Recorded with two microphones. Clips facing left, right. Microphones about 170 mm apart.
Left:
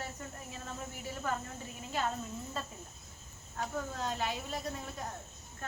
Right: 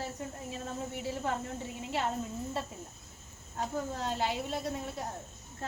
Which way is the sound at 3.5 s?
30° right (ahead or behind).